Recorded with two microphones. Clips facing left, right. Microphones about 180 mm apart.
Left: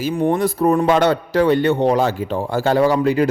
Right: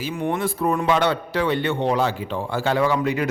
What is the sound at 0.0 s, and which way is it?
A man's voice, 35° left (ahead or behind).